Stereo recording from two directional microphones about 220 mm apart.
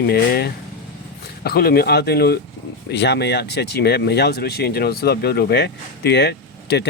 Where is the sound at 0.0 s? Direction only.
45° left (ahead or behind).